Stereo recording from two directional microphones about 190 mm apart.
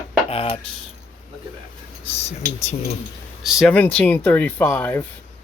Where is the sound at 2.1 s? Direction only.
35° left (ahead or behind).